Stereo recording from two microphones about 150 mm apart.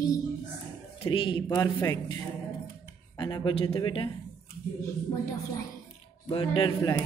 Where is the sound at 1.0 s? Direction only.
35° left (ahead or behind).